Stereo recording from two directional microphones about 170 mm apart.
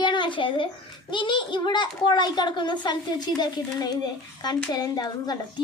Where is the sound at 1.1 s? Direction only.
30° left (ahead or behind).